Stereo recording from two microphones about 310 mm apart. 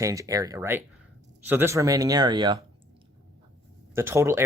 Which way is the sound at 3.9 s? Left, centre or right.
Centre.